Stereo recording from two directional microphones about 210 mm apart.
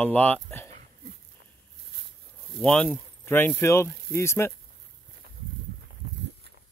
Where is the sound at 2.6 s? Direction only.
5° left (ahead or behind).